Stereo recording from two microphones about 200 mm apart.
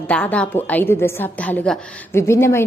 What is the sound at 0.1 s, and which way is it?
A woman's voice, 5° left (ahead or behind).